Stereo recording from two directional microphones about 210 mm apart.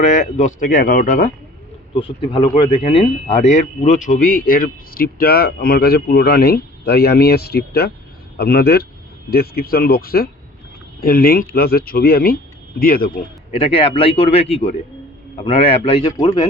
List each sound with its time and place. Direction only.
0.0 s a man's voice: 35° left (ahead or behind)
2.3 s speech: 25° left (ahead or behind); by 13.1 s 45° left (ahead or behind)
13.6 s speech: 25° left (ahead or behind)